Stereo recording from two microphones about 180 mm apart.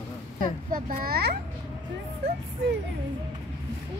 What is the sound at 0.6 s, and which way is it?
Speech, 50° right (ahead or behind).